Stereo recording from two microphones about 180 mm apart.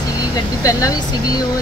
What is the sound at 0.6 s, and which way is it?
Speech, 20° left (ahead or behind).